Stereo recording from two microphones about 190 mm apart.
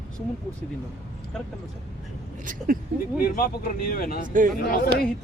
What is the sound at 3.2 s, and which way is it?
Speech, 50° left (ahead or behind).